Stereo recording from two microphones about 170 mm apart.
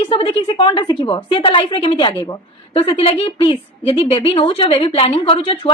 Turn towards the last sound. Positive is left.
turn(degrees=35)  # may be behind; listen again after turning